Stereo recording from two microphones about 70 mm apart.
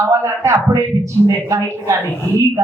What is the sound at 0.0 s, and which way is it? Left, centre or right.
A woman's voice, right.